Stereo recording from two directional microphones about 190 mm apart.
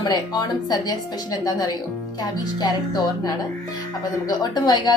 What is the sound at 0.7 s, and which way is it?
A woman's voice, 20° left (ahead or behind).